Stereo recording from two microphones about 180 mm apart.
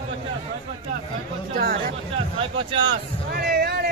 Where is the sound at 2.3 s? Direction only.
30° right (ahead or behind).